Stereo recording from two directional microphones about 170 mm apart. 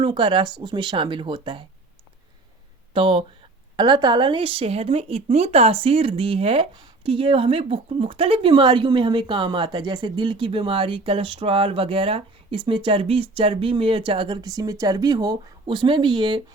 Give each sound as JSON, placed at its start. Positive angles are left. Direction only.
{"t": 0.0, "sound": "speech", "side_deg": -30}
{"t": 2.9, "sound": "speech", "side_deg": -30}